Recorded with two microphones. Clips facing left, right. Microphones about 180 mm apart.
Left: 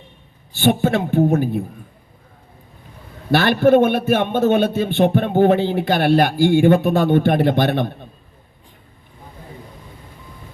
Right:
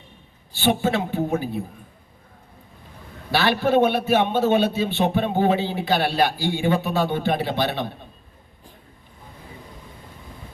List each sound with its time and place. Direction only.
0.5 s a man's voice: 50° left (ahead or behind)
3.3 s a man's voice: 50° left (ahead or behind)